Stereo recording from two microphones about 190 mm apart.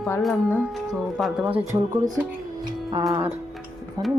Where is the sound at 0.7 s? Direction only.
Centre (ahead or behind).